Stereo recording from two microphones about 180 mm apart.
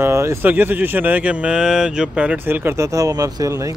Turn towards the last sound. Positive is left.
turn(degrees=-20)  # may be behind; listen again after turning